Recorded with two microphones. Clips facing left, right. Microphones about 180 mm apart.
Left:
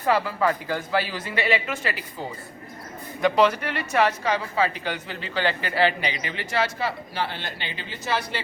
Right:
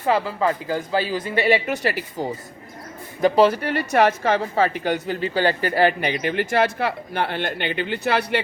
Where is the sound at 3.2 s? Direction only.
35° right (ahead or behind).